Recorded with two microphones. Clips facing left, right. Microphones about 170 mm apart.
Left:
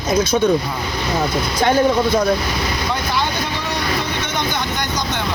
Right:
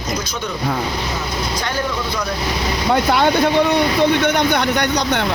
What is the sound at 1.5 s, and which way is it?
Speech, 50° left (ahead or behind).